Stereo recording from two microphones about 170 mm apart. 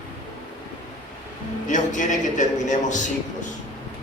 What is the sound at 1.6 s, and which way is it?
A man's voice, 45° left (ahead or behind).